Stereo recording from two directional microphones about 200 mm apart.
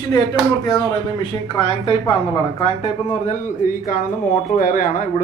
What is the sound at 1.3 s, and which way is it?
A man's voice, 25° left (ahead or behind).